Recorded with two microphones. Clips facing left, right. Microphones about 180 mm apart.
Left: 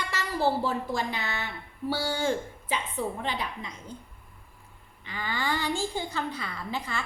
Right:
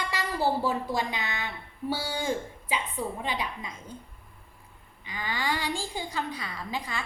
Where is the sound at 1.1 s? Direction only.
15° right (ahead or behind).